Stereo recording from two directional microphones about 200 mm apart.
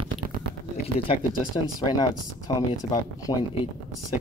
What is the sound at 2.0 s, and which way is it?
Speech, 20° left (ahead or behind).